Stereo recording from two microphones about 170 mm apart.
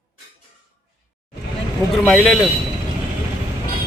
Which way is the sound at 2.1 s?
Centre (ahead or behind).